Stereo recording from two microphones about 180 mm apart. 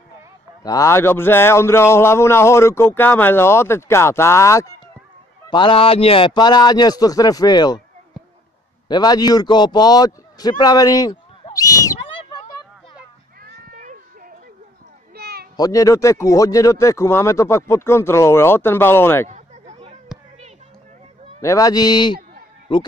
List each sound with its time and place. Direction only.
0.7 s speech: 15° left (ahead or behind)
5.5 s a man's voice: 25° left (ahead or behind)
8.8 s a man's voice: 20° left (ahead or behind)
11.5 s a sound: 20° left (ahead or behind)
13.4 s cat: 50° right (ahead or behind)
15.1 s a sound: 60° right (ahead or behind)
15.5 s speech: 20° left (ahead or behind)
19.2 s a sound: 40° right (ahead or behind)
21.4 s a man's voice: 20° left (ahead or behind)